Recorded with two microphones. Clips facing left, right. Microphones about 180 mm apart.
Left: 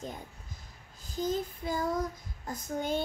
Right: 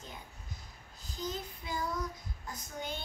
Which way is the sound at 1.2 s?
50° left (ahead or behind).